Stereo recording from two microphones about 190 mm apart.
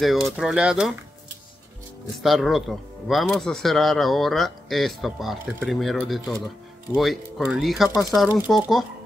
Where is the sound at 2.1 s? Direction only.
Centre (ahead or behind).